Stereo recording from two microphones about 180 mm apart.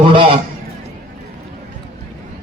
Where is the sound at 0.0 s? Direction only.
30° right (ahead or behind).